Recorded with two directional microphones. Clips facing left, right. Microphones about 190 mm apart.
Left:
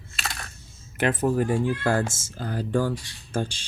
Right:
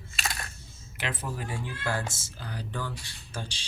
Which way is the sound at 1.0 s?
50° left (ahead or behind).